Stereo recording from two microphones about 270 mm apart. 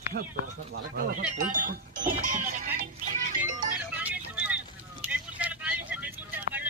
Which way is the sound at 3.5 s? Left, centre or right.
Right.